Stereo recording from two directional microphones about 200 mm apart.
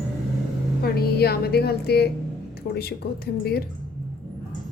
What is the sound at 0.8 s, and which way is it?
A woman's voice, 50° left (ahead or behind).